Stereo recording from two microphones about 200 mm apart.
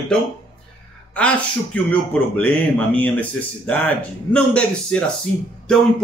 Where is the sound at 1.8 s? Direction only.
5° left (ahead or behind).